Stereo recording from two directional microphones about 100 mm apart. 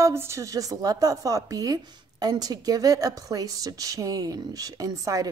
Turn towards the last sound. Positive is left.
turn(degrees=-35)  # may be behind; listen again after turning